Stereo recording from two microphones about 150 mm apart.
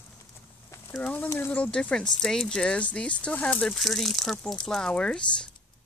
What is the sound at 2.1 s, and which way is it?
Speech, 5° left (ahead or behind).